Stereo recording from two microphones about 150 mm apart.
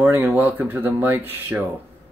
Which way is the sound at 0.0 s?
15° right (ahead or behind).